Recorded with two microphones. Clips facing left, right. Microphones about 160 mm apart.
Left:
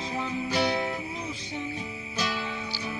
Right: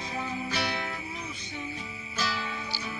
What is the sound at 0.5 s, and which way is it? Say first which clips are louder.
Music: left 9 dB; 25° left (ahead or behind).